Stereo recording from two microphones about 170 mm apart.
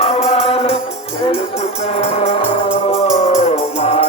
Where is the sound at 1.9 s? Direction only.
35° left (ahead or behind).